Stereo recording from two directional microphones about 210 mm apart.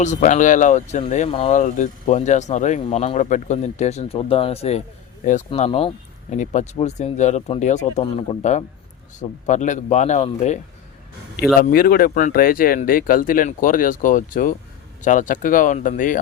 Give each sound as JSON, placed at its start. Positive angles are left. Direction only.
{"t": 0.0, "sound": "speech", "side_deg": 35}
{"t": 11.7, "sound": "speech", "side_deg": 45}